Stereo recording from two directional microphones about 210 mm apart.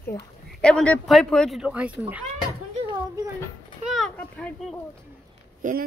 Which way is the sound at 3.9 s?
5° left (ahead or behind).